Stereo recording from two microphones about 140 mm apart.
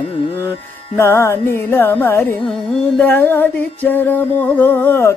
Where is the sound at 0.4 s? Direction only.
20° left (ahead or behind).